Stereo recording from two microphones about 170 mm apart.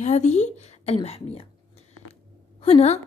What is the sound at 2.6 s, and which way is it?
Speech, 35° left (ahead or behind).